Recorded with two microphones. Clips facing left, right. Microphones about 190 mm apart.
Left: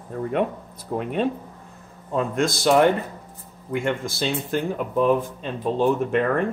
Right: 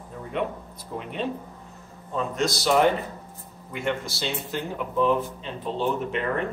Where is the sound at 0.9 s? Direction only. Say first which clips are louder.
Left 7 dB; 50° left (ahead or behind).